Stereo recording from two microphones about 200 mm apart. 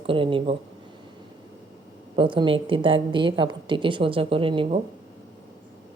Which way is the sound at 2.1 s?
25° right (ahead or behind).